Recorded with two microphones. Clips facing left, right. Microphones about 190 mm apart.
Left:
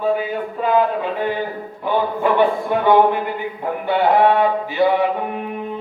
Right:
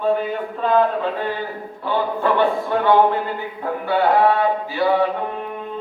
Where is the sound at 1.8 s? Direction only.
15° left (ahead or behind).